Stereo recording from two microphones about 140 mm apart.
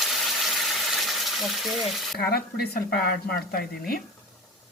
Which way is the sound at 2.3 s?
90° left.